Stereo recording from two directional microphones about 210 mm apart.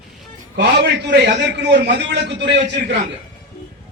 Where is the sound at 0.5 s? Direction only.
55° right (ahead or behind).